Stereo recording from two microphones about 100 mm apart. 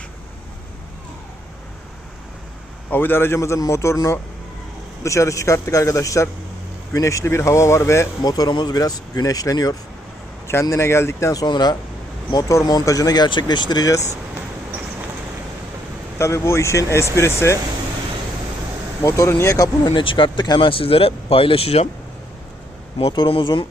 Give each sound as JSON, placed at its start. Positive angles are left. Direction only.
{"t": 2.9, "sound": "a man's voice", "side_deg": 20}
{"t": 8.2, "sound": "speech", "side_deg": 40}
{"t": 10.5, "sound": "a man's voice", "side_deg": 25}
{"t": 12.3, "sound": "speech", "side_deg": 35}
{"t": 16.1, "sound": "a man's voice", "side_deg": 30}
{"t": 19.0, "sound": "speech", "side_deg": 30}
{"t": 19.8, "sound": "speech", "side_deg": 55}
{"t": 23.1, "sound": "speech", "side_deg": 55}